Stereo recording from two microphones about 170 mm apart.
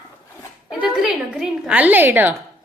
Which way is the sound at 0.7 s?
5° right (ahead or behind).